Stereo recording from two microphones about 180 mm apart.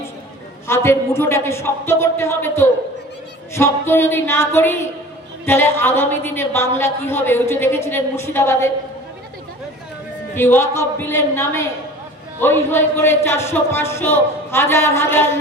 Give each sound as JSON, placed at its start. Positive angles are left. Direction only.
{"t": 0.7, "sound": "a woman's voice", "side_deg": 15}
{"t": 10.3, "sound": "a woman's voice", "side_deg": 15}